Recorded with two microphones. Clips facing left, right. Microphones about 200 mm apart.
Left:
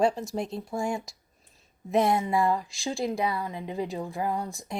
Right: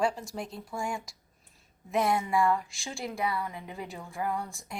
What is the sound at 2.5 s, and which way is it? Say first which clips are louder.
Speech: left 5 dB; 35° left (ahead or behind).